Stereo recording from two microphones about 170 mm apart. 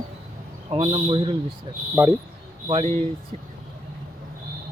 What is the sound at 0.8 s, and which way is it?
Speech, 30° right (ahead or behind).